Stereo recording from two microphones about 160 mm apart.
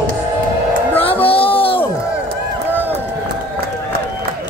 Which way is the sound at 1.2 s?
35° left (ahead or behind).